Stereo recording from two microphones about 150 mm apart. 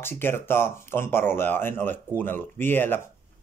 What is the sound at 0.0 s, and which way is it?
Speech, 15° left (ahead or behind).